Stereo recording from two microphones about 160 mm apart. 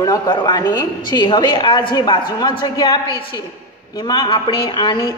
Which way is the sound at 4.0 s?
30° left (ahead or behind).